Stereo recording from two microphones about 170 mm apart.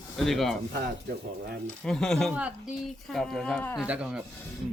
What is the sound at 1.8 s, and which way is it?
Speech, 5° left (ahead or behind).